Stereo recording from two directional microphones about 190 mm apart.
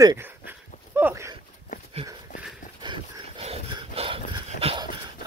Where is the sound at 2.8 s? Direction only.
25° right (ahead or behind).